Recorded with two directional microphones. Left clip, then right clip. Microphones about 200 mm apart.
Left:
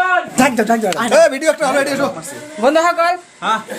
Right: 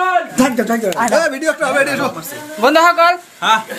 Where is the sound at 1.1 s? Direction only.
40° left (ahead or behind).